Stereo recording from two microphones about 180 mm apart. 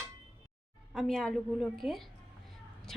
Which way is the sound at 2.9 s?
Centre (ahead or behind).